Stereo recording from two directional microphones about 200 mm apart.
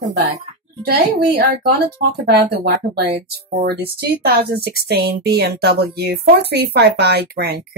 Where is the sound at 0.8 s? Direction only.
50° right (ahead or behind).